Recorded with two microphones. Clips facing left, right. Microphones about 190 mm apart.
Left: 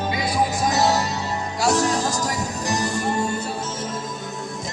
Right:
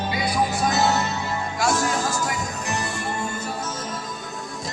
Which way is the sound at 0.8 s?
35° left (ahead or behind).